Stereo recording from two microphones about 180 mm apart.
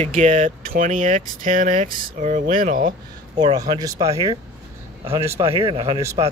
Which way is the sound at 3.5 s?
20° right (ahead or behind).